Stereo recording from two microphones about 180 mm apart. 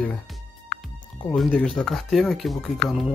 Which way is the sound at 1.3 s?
Centre (ahead or behind).